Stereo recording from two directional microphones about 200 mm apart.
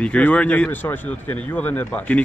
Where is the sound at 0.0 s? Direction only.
5° left (ahead or behind).